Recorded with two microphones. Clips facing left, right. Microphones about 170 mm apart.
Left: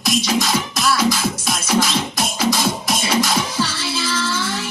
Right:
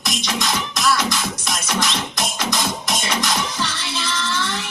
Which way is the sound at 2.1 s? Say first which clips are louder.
Left 6 dB; 5° left (ahead or behind).